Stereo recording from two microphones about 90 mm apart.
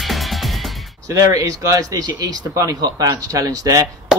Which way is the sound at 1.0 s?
40° right (ahead or behind).